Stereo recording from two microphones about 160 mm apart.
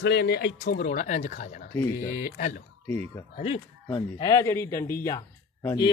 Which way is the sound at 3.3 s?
40° left (ahead or behind).